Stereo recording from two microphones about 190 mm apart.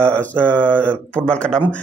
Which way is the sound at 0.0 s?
5° left (ahead or behind).